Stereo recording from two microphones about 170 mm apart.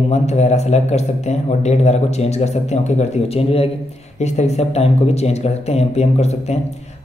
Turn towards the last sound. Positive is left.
turn(degrees=40)  # may be behind; listen again after turning